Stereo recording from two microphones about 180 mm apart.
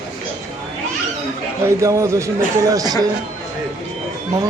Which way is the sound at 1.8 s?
15° right (ahead or behind).